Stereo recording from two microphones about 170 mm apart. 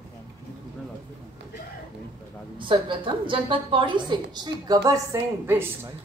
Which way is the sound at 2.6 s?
30° right (ahead or behind).